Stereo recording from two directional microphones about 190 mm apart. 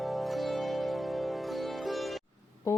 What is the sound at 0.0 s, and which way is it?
Music, centre (ahead or behind).